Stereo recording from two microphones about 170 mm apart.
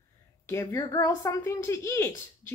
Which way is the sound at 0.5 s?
15° left (ahead or behind).